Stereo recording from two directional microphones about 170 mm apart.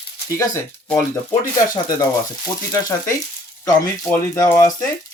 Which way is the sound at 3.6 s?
20° left (ahead or behind).